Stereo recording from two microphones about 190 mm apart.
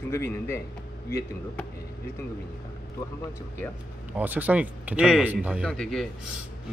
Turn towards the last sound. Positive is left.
turn(degrees=0)  # may be behind; listen again after turning